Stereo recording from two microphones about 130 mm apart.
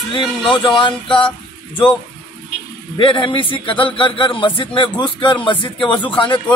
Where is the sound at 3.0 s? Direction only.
40° left (ahead or behind).